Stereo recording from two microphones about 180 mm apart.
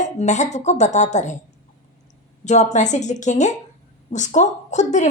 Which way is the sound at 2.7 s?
40° left (ahead or behind).